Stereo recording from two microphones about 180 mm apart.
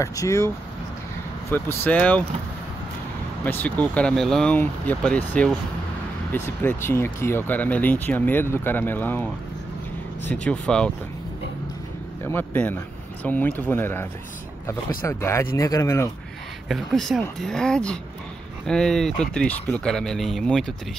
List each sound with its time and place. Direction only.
0.0 s speech: 15° left (ahead or behind)
1.5 s speech: 10° left (ahead or behind)
3.4 s speech: 10° left (ahead or behind)
10.3 s speech: 5° left (ahead or behind)
12.3 s speech: 10° left (ahead or behind)
16.6 s speech: centre (ahead or behind)